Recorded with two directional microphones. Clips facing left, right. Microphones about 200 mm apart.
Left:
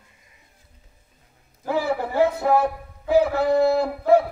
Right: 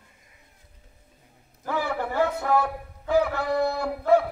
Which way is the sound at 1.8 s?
25° left (ahead or behind).